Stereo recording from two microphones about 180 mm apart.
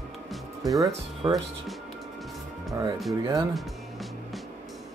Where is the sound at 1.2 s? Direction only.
20° right (ahead or behind).